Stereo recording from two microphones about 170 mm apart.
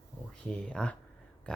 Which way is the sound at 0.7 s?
5° left (ahead or behind).